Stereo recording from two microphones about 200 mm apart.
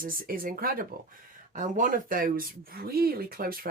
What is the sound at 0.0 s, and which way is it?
Speech, 45° right (ahead or behind).